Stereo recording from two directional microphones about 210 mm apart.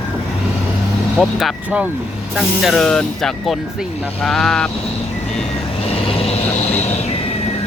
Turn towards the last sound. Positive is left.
turn(degrees=30)  # may be behind; listen again after turning